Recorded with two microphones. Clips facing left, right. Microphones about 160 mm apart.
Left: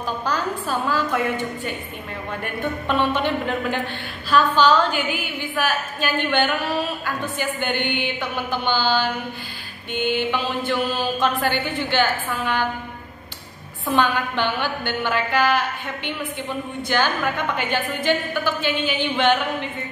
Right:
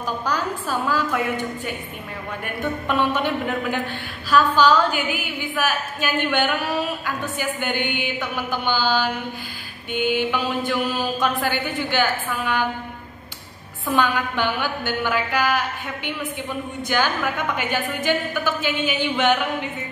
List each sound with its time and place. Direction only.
0.2 s a woman's voice: 10° right (ahead or behind)
2.9 s a woman's voice: 10° right (ahead or behind)
13.8 s a woman's voice: 10° right (ahead or behind)